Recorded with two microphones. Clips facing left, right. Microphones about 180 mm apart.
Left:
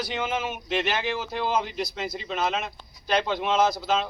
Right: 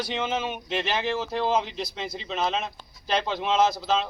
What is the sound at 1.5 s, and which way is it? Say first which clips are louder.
Speech: left 2 dB; 30° right (ahead or behind).